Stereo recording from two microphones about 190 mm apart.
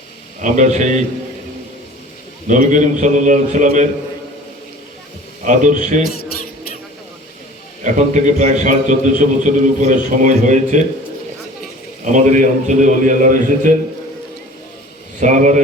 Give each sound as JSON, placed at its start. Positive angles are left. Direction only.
{"t": 0.4, "sound": "a man's voice", "side_deg": -40}
{"t": 2.5, "sound": "a man's voice", "side_deg": -40}
{"t": 5.5, "sound": "a man's voice", "side_deg": -40}
{"t": 7.9, "sound": "a man's voice", "side_deg": -40}
{"t": 12.0, "sound": "a man's voice", "side_deg": -40}
{"t": 15.2, "sound": "a man's voice", "side_deg": -40}